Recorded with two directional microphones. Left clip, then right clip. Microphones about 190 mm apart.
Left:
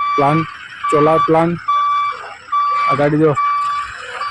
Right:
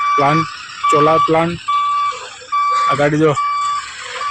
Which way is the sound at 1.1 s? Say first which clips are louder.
Even; 10° left (ahead or behind).